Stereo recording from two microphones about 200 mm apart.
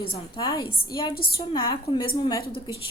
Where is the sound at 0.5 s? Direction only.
20° left (ahead or behind).